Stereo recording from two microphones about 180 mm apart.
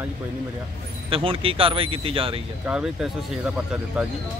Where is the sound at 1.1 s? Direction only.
30° right (ahead or behind).